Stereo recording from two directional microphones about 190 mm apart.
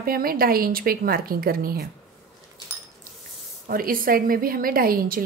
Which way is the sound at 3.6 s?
50° right (ahead or behind).